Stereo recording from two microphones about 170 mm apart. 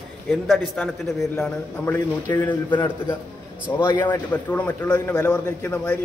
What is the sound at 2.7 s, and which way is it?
A man's voice, 25° left (ahead or behind).